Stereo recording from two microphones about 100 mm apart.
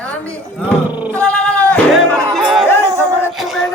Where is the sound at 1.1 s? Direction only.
10° left (ahead or behind).